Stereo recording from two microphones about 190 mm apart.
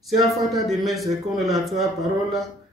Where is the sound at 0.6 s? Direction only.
Centre (ahead or behind).